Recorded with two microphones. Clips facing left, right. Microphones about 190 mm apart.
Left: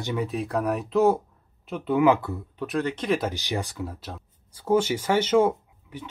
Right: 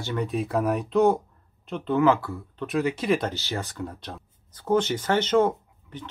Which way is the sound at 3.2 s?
15° left (ahead or behind).